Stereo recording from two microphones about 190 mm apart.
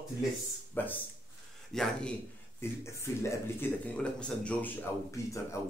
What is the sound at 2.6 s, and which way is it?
Speech, 15° left (ahead or behind).